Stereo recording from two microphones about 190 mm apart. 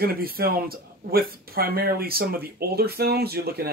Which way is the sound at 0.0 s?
50° right (ahead or behind).